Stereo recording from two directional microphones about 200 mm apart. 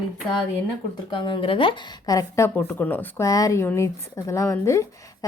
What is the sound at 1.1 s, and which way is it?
Speech, 25° left (ahead or behind).